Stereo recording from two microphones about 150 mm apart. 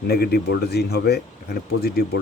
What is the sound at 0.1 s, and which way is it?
Speech, 90° left.